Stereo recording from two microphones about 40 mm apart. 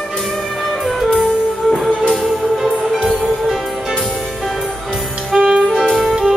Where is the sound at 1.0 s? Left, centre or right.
Centre.